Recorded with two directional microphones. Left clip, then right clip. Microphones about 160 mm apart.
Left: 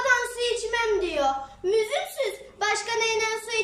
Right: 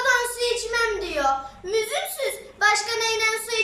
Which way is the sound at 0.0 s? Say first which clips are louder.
Right 2 dB; 15° left (ahead or behind).